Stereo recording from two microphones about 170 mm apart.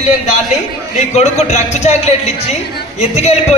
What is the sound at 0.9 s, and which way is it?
A man's voice, 40° left (ahead or behind).